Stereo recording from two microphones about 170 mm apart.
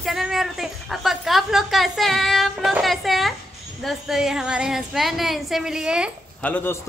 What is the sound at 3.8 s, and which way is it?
Speech, centre (ahead or behind).